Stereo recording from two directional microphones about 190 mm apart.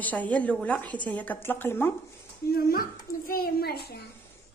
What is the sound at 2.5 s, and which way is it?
A child's voice, 50° left (ahead or behind).